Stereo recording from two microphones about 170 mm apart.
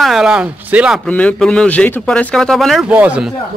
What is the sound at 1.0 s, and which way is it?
Speech, 5° left (ahead or behind).